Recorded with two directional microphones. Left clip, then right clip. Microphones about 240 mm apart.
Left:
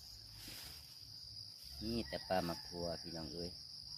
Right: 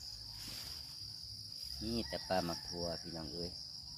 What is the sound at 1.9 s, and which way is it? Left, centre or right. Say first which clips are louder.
Cricket: right 1 dB; centre.